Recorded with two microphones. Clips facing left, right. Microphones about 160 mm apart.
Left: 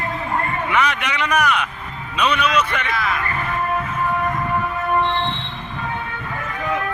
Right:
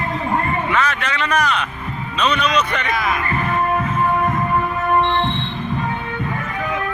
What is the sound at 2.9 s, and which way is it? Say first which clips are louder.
Speech: right 2 dB; 15° right (ahead or behind).